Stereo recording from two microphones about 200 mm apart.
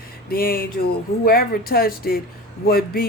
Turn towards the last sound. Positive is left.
turn(degrees=50)  # may be behind; listen again after turning